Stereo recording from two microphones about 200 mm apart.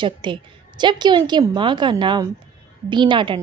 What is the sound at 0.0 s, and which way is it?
A woman's voice, 25° right (ahead or behind).